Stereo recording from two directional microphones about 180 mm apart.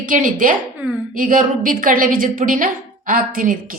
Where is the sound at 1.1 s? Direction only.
50° right (ahead or behind).